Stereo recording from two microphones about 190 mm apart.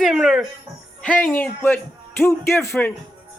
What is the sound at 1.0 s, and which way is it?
Speech, 5° left (ahead or behind).